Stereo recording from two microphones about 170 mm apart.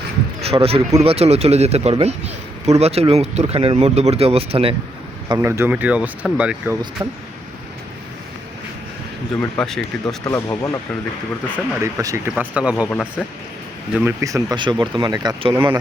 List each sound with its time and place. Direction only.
0.4 s speech: 35° right (ahead or behind)
5.4 s speech: 15° right (ahead or behind)
7.0 s speech: 20° right (ahead or behind)
9.6 s speech: 5° left (ahead or behind)
10.2 s speech: 15° left (ahead or behind)
11.8 s speech: 15° right (ahead or behind)
12.9 s speech: 10° left (ahead or behind)
13.9 s speech: 15° right (ahead or behind)
15.5 s speech: 15° right (ahead or behind)